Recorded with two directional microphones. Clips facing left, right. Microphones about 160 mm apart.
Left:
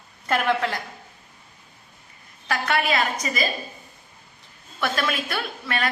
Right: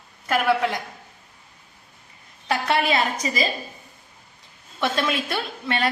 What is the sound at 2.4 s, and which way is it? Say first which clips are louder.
A woman's voice: right 2 dB; 30° right (ahead or behind).